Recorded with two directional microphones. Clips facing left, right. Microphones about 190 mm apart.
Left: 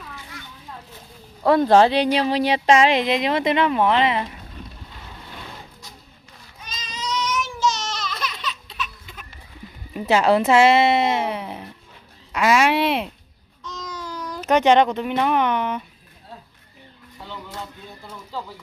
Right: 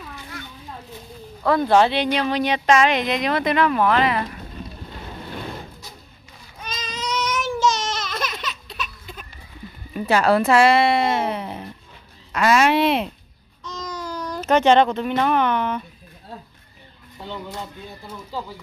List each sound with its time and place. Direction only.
1.6 s speech: 35° left (ahead or behind); by 4.4 s 20° left (ahead or behind)
6.6 s baby cry: 60° right (ahead or behind); by 9.2 s 35° right (ahead or behind)
9.9 s speech: 20° left (ahead or behind)
13.7 s a sound: centre (ahead or behind)
14.4 s speech: 15° left (ahead or behind)